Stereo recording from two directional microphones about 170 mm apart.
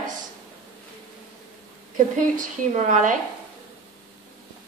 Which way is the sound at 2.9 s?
50° right (ahead or behind).